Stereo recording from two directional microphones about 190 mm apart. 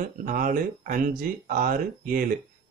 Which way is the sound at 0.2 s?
45° right (ahead or behind).